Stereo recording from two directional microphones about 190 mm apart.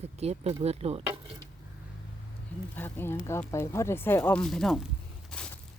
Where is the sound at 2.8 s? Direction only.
10° left (ahead or behind).